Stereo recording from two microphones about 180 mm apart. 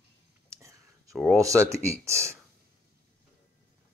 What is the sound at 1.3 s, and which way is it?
Speech, 15° right (ahead or behind).